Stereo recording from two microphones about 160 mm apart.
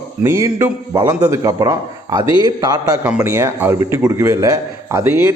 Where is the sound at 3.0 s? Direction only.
10° right (ahead or behind).